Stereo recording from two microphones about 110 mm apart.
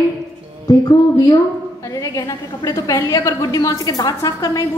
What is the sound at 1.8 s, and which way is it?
A woman's voice, 30° left (ahead or behind).